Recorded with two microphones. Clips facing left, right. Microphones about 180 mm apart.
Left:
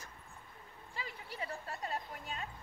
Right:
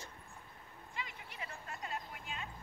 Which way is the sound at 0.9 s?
35° left (ahead or behind).